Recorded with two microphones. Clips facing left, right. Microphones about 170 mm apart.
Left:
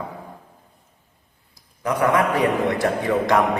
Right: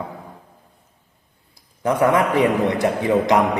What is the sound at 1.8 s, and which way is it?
A man's voice, 25° right (ahead or behind).